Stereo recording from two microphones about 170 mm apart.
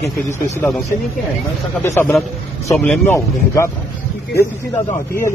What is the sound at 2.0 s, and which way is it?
Speech, 10° left (ahead or behind).